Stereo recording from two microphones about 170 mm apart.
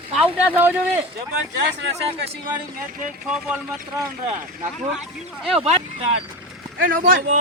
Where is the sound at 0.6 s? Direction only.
10° right (ahead or behind).